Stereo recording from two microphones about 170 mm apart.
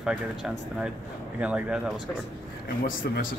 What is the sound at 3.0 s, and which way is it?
Speech, 70° left (ahead or behind).